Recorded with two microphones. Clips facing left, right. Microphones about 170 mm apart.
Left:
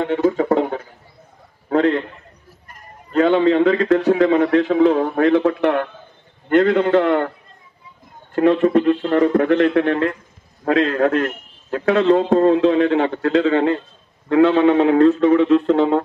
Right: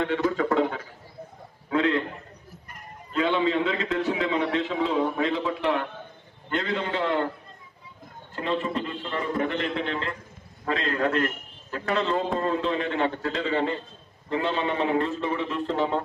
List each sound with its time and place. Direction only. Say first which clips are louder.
0.0 s music: left 7 dB; 40° left (ahead or behind)
1.7 s a sound: left 7 dB; 45° left (ahead or behind)
3.1 s a man's voice: left 9 dB; 50° left (ahead or behind)
8.4 s a man's voice: left 13 dB; 60° left (ahead or behind); by 16.0 s 90° left